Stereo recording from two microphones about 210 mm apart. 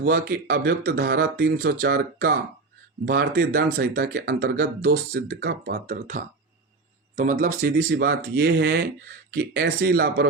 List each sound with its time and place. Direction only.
0.0 s speech: 45° right (ahead or behind)
7.3 s speech: 45° right (ahead or behind)